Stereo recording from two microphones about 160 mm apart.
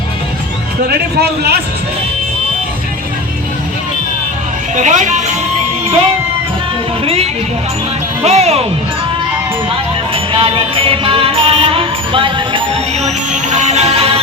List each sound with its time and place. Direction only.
0.9 s a man's voice: 80° right
4.7 s music: 50° right (ahead or behind)
7.0 s music: 35° right (ahead or behind)
8.2 s speech: 40° right (ahead or behind)
10.3 s music: 35° right (ahead or behind)
13.1 s music: 45° right (ahead or behind)